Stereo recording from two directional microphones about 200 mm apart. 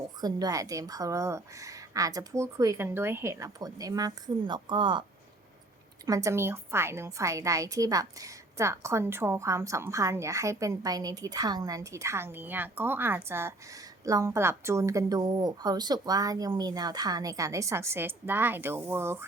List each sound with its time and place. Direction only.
0.2 s a woman's voice: 20° right (ahead or behind)
6.1 s a woman's voice: 15° right (ahead or behind)